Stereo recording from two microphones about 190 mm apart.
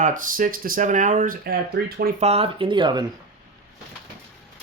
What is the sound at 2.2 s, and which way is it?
Speech, 30° right (ahead or behind).